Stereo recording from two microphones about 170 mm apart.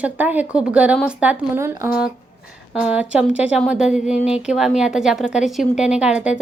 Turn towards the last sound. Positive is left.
turn(degrees=-5)  # may be behind; listen again after turning